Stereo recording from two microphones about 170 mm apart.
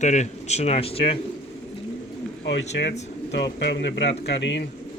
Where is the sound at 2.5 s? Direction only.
90° left.